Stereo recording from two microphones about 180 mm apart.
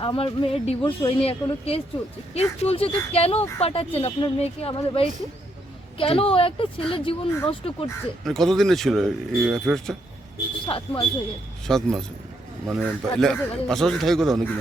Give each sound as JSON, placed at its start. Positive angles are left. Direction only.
{"t": 0.0, "sound": "speech", "side_deg": 30}
{"t": 8.2, "sound": "speech", "side_deg": 0}
{"t": 10.7, "sound": "speech", "side_deg": 30}
{"t": 11.6, "sound": "speech", "side_deg": 0}